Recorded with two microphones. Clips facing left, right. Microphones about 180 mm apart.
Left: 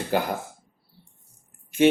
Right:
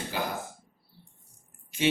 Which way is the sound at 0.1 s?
55° left (ahead or behind).